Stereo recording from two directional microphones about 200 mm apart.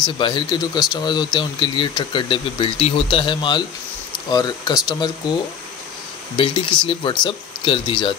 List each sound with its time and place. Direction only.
0.0 s speech: 25° left (ahead or behind)